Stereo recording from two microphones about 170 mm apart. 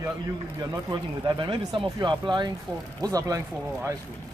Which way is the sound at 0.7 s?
25° right (ahead or behind).